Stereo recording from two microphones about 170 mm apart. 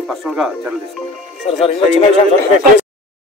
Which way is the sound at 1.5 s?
35° left (ahead or behind).